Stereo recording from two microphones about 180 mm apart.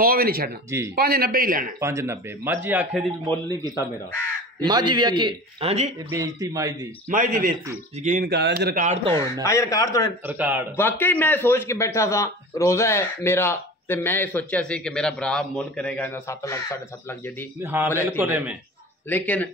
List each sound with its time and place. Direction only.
0.0 s speech: 55° right (ahead or behind)
0.7 s speech: 15° right (ahead or behind)
0.9 s speech: 55° right (ahead or behind)
1.8 s speech: 15° right (ahead or behind)
3.6 s speech: 20° left (ahead or behind)
4.6 s a man's voice: 25° right (ahead or behind)
6.0 s a man's voice: 20° right (ahead or behind)
7.1 s a man's voice: 50° right (ahead or behind)
8.3 s speech: 65° right (ahead or behind); by 9.1 s 40° right (ahead or behind)
9.1 s speech: 15° left (ahead or behind)
10.2 s speech: 10° right (ahead or behind)
10.8 s speech: 10° left (ahead or behind)
17.6 s speech: 15° right (ahead or behind)
19.0 s speech: 10° left (ahead or behind)